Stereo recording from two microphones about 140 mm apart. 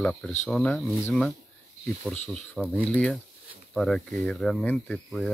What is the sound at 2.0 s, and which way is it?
Speech, 5° left (ahead or behind).